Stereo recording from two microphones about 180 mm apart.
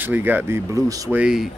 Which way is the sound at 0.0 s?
10° right (ahead or behind).